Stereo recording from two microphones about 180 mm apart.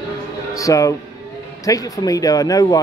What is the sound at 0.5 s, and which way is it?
Speech, 20° left (ahead or behind).